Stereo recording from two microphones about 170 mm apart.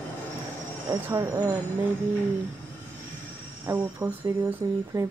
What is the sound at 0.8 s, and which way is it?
Speech, 15° right (ahead or behind).